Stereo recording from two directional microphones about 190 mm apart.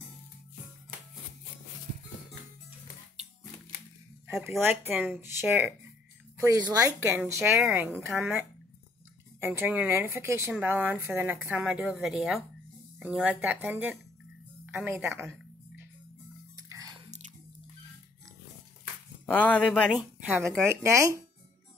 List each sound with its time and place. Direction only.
4.5 s speech: 10° right (ahead or behind)
16.5 s biting: 20° right (ahead or behind)
19.2 s speech: 10° left (ahead or behind)
20.0 s speech: 10° right (ahead or behind)